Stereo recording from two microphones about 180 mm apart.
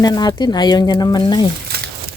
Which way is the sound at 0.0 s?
20° left (ahead or behind).